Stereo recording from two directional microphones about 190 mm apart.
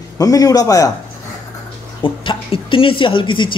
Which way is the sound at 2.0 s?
25° left (ahead or behind).